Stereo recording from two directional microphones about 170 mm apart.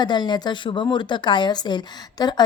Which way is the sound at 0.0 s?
25° left (ahead or behind).